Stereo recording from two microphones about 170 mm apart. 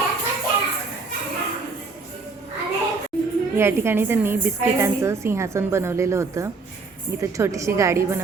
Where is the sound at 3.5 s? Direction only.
15° right (ahead or behind).